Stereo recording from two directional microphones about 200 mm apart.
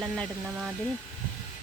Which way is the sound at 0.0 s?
Centre (ahead or behind).